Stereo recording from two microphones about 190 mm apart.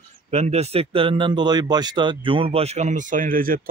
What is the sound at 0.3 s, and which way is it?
Speech, 35° right (ahead or behind).